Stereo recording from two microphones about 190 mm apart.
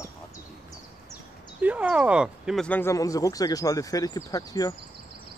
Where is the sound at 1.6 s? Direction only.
5° right (ahead or behind); by 4.7 s 20° left (ahead or behind).